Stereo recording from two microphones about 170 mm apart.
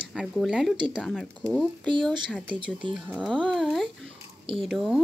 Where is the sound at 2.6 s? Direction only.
30° right (ahead or behind).